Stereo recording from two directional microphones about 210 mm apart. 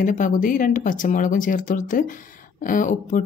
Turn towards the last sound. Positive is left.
turn(degrees=35)  # may be behind; listen again after turning